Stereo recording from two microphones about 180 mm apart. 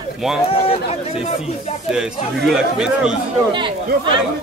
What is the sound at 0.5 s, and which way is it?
Speech, 30° left (ahead or behind).